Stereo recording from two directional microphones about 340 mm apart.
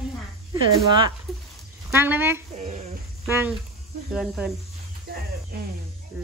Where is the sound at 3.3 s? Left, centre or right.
Centre.